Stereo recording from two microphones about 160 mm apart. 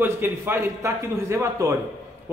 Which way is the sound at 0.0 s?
15° right (ahead or behind).